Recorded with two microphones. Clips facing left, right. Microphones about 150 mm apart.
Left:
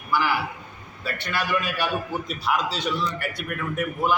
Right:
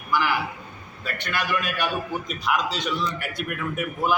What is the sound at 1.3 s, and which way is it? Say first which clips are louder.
Speech: left 1 dB; 5° left (ahead or behind).